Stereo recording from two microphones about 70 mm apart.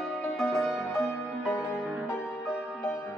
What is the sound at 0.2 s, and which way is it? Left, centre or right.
Music, centre.